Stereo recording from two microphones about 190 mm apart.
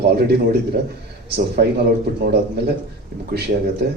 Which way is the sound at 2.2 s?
60° right (ahead or behind).